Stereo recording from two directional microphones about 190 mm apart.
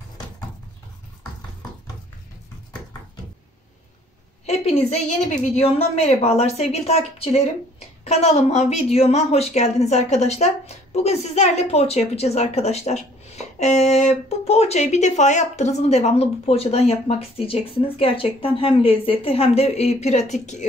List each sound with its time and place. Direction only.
4.5 s a woman's voice: 35° left (ahead or behind)